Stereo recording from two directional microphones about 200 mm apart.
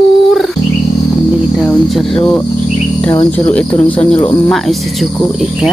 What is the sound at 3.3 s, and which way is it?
Speech, 5° left (ahead or behind).